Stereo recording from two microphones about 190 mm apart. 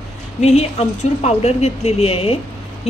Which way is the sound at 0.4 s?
35° left (ahead or behind).